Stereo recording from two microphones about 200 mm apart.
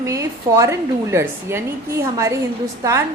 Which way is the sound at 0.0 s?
15° right (ahead or behind).